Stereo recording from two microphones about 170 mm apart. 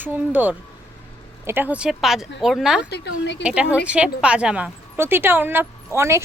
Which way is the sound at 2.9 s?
85° left.